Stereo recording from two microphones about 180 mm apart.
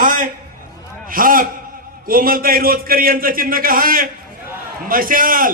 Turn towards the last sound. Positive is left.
turn(degrees=-50)  # may be behind; listen again after turning